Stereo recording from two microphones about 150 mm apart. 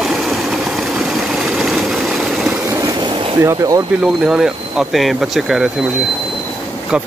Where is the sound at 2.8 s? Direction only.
20° right (ahead or behind).